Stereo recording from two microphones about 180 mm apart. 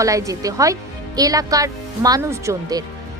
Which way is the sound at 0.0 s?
15° right (ahead or behind).